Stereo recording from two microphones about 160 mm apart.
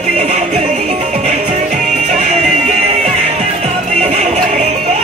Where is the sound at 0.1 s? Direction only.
45° right (ahead or behind).